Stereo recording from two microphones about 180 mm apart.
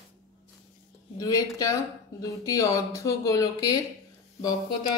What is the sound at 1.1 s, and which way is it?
Speech, 20° left (ahead or behind).